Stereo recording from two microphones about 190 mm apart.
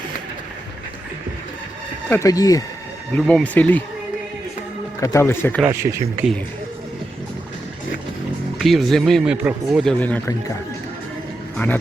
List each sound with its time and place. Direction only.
2.0 s speech: 15° left (ahead or behind)
3.2 s speech: 5° left (ahead or behind)
4.9 s speech: 15° left (ahead or behind)
5.8 s speech: 30° right (ahead or behind)
8.5 s speech: centre (ahead or behind)